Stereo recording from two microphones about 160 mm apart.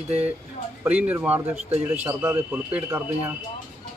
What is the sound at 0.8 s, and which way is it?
Speech, 10° right (ahead or behind).